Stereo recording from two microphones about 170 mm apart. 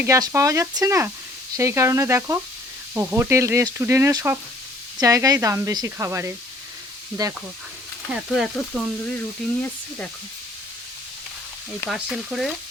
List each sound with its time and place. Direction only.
0.0 s speech: 20° right (ahead or behind)
8.1 s speech: centre (ahead or behind)
11.9 s speech: centre (ahead or behind)